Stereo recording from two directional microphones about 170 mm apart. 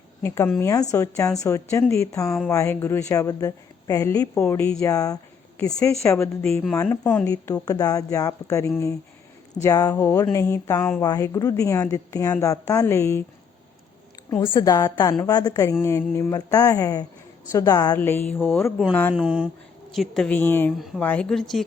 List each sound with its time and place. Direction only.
0.2 s a woman's voice: 15° left (ahead or behind)
4.8 s speech: 20° left (ahead or behind)
6.4 s a woman's voice: 5° left (ahead or behind)
7.3 s a woman's voice: 20° left (ahead or behind)
14.4 s a woman's voice: 25° left (ahead or behind); by 19.1 s 5° left (ahead or behind)
19.1 s a woman's voice: 5° right (ahead or behind); by 20.7 s 10° left (ahead or behind)
20.7 s a woman's voice: centre (ahead or behind)